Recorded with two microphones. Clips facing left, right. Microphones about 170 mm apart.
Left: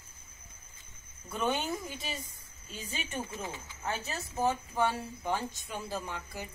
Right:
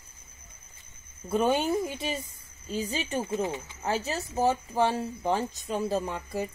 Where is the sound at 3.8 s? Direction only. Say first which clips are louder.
Right 6 dB; 35° right (ahead or behind).